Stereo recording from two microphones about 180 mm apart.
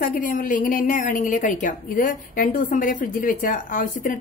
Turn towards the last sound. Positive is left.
turn(degrees=45)  # may be behind; listen again after turning